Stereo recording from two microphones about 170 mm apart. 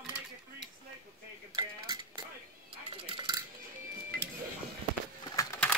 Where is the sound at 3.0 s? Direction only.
30° right (ahead or behind).